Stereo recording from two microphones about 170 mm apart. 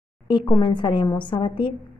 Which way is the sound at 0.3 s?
30° left (ahead or behind).